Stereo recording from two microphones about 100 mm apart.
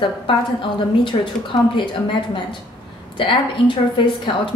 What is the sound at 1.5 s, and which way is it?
Speech, 40° left (ahead or behind).